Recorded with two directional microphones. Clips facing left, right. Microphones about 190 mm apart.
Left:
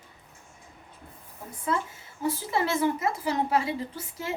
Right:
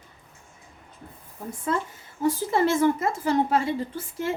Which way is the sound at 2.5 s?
50° right (ahead or behind).